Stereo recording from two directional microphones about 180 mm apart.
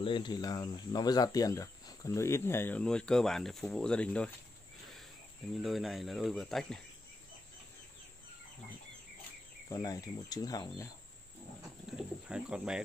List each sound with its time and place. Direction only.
0.0 s speech: 25° left (ahead or behind); by 4.3 s 5° left (ahead or behind)
5.6 s speech: centre (ahead or behind)
9.7 s speech: 20° left (ahead or behind)
12.0 s speech: 5° right (ahead or behind)